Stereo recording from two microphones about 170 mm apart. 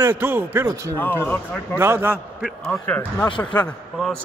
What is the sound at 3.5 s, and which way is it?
Speech, 25° left (ahead or behind).